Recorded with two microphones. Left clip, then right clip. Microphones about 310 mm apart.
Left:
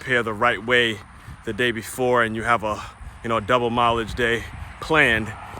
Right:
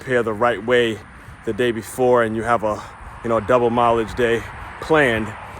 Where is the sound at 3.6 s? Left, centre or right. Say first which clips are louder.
Right 4 dB; centre.